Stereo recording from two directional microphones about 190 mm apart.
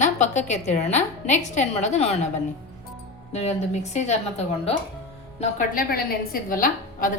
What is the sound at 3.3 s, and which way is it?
A woman's voice, 35° left (ahead or behind).